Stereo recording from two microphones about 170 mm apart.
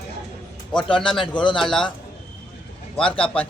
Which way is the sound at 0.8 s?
30° left (ahead or behind).